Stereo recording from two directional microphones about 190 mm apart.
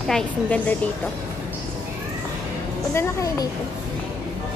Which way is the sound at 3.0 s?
15° left (ahead or behind).